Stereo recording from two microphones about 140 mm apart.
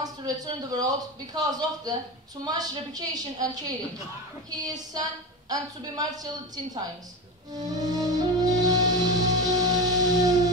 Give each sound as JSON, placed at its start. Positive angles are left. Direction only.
{"t": 0.0, "sound": "speech", "side_deg": -30}
{"t": 6.5, "sound": "speech", "side_deg": -25}
{"t": 7.5, "sound": "music", "side_deg": -25}